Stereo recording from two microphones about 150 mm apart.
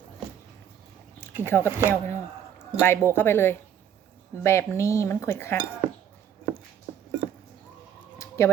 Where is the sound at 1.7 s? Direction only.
15° right (ahead or behind).